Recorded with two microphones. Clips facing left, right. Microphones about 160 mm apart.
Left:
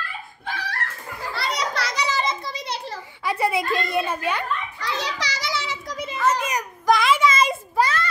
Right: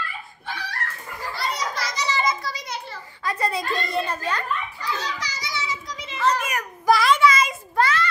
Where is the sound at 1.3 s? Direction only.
70° left (ahead or behind).